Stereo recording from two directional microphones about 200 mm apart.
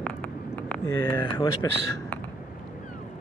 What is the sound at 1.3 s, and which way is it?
Speech, 20° left (ahead or behind).